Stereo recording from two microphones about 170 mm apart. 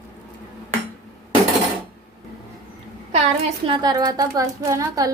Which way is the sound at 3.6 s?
25° right (ahead or behind).